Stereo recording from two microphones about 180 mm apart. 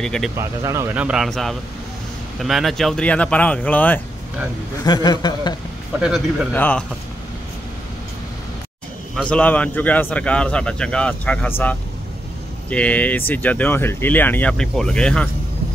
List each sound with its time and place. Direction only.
0.0 s speech: 5° left (ahead or behind)
0.4 s speech: 15° right (ahead or behind); by 4.0 s 10° left (ahead or behind)
4.8 s a man's voice: 20° left (ahead or behind)
5.9 s speech: 5° right (ahead or behind)
6.5 s speech: 10° left (ahead or behind)
9.1 s speech: 5° left (ahead or behind)